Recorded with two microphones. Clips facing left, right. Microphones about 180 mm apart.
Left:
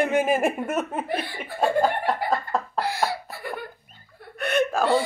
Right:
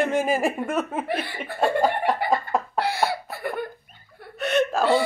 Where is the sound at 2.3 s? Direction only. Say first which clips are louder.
Right 2 dB; 10° right (ahead or behind).